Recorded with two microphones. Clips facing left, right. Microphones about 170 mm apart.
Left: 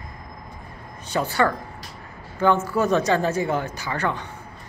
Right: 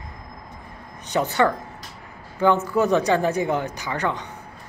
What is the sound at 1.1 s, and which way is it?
Speech, 20° right (ahead or behind).